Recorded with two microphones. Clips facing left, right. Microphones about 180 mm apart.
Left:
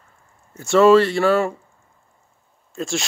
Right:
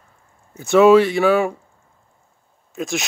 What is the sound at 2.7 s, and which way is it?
Speech, 20° right (ahead or behind).